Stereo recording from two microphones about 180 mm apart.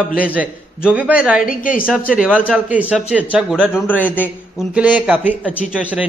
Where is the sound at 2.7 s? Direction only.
5° right (ahead or behind).